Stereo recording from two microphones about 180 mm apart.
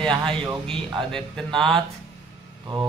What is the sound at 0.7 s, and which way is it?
Speech, 5° left (ahead or behind).